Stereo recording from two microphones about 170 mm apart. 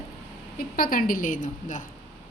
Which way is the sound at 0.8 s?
55° left (ahead or behind).